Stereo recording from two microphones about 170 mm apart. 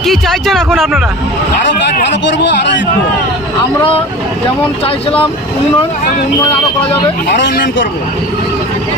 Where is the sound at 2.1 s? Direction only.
90° left.